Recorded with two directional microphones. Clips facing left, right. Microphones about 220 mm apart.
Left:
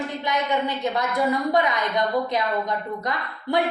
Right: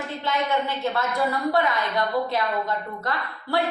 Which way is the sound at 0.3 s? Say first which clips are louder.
Even; 15° left (ahead or behind).